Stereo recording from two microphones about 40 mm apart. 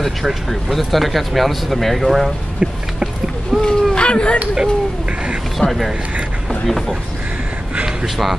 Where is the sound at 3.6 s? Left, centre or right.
Left.